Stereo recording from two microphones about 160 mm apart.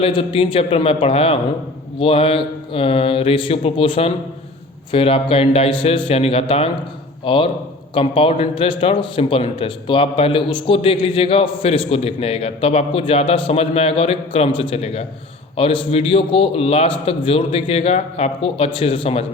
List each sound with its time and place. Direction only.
0.0 s a man's voice: 35° left (ahead or behind)